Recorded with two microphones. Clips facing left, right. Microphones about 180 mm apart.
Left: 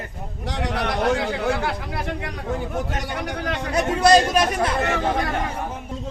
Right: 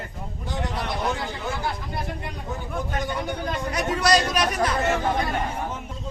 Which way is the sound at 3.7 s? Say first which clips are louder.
Left 6 dB; 25° left (ahead or behind).